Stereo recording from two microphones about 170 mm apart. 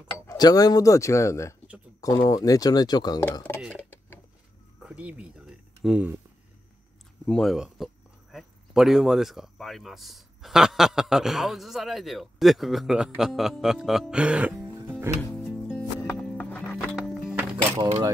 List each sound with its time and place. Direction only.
0.3 s speech: 20° left (ahead or behind)
4.8 s a sound: 5° right (ahead or behind)
5.8 s speech: 5° right (ahead or behind)
7.2 s speech: 5° left (ahead or behind)
15.3 s music: 5° left (ahead or behind)
17.7 s speech: 35° right (ahead or behind)